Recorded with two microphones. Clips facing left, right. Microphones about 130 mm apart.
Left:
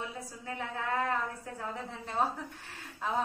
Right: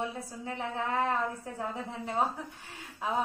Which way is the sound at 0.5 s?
20° right (ahead or behind).